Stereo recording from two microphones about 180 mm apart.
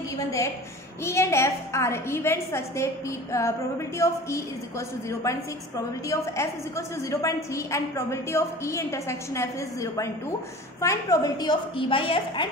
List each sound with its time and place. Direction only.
1.0 s a woman's voice: 15° left (ahead or behind)